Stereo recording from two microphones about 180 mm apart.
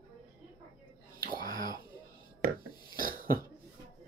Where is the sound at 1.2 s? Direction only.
50° right (ahead or behind).